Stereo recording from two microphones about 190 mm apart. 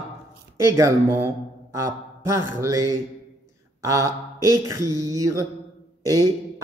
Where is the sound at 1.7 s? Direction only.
15° right (ahead or behind).